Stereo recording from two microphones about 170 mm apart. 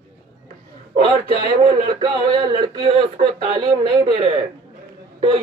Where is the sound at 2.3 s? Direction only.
30° right (ahead or behind).